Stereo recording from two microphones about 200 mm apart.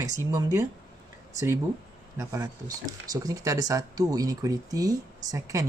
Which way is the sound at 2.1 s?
15° right (ahead or behind).